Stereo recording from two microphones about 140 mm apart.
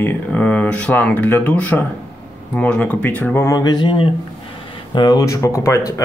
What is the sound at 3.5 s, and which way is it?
Speech, 30° left (ahead or behind).